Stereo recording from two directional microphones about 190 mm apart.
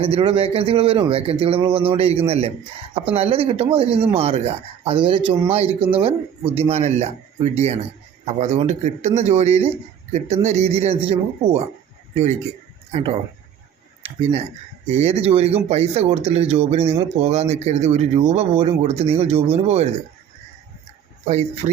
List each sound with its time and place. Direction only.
0.0 s a man's voice: 30° right (ahead or behind)